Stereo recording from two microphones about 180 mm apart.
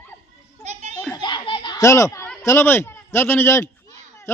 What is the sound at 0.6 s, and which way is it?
Children playing, 40° right (ahead or behind).